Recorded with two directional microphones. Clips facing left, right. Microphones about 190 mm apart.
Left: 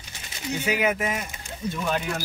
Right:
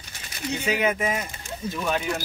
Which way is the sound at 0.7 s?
5° left (ahead or behind).